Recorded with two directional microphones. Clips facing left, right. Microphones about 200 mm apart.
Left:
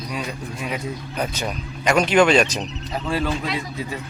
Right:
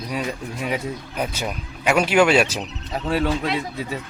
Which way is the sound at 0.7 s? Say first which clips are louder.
Even; 5° right (ahead or behind).